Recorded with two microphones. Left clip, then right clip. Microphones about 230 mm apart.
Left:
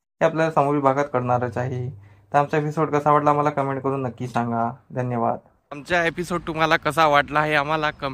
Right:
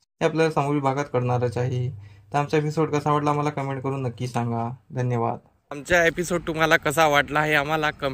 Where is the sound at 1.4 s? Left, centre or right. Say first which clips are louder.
Even; right.